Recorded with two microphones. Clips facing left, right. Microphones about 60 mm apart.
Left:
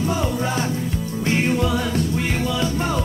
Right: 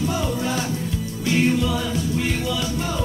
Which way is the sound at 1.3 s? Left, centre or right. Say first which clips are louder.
Right 1 dB; left.